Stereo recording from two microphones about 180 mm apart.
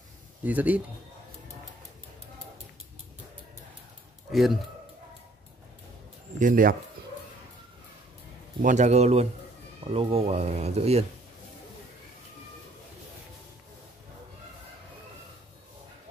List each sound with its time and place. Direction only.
0.4 s speech: 10° right (ahead or behind)
4.3 s speech: centre (ahead or behind)
6.4 s speech: 50° right (ahead or behind)
8.6 s speech: 40° right (ahead or behind)